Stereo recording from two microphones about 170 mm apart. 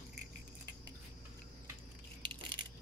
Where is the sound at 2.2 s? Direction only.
30° right (ahead or behind).